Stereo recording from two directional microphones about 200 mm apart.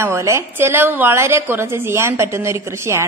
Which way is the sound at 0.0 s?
15° right (ahead or behind).